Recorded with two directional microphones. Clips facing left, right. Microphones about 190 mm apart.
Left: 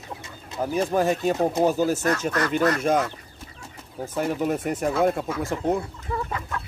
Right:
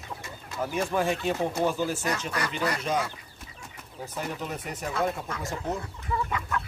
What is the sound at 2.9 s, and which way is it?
Speech, 50° left (ahead or behind).